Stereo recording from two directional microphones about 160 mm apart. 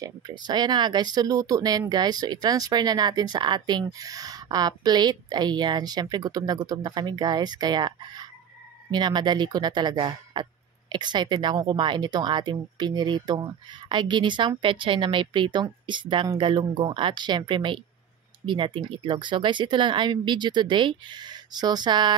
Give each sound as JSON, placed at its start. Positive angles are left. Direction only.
{"t": 0.0, "sound": "a woman's voice", "side_deg": -25}